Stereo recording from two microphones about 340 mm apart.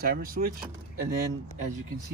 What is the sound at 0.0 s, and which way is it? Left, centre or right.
Speech, right.